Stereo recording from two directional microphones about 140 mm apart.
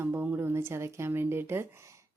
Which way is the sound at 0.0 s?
15° right (ahead or behind).